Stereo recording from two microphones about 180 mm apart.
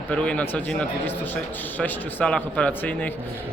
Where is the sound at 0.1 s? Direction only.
5° left (ahead or behind).